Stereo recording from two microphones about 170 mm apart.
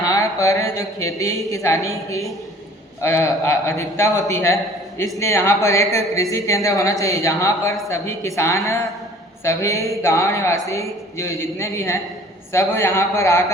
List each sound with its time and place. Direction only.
0.0 s a man's voice: 20° left (ahead or behind)